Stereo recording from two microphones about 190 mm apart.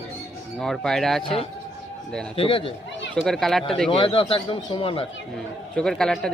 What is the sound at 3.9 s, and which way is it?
Speech, 30° left (ahead or behind).